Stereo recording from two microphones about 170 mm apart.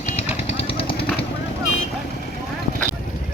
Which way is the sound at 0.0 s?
40° left (ahead or behind).